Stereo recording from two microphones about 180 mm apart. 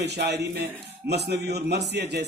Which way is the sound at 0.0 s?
70° right (ahead or behind).